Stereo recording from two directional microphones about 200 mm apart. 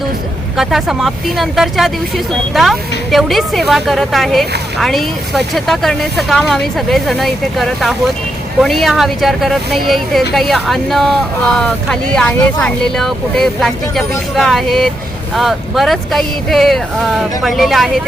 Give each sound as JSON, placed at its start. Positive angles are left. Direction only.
{"t": 0.5, "sound": "speech", "side_deg": 0}